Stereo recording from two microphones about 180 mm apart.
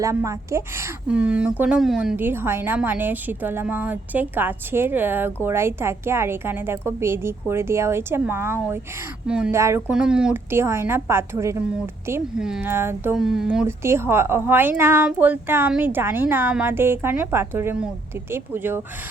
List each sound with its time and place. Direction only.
0.0 s a woman's voice: 15° right (ahead or behind)
9.6 s a woman's voice: 15° right (ahead or behind)
9.9 s a woman's voice: 5° right (ahead or behind)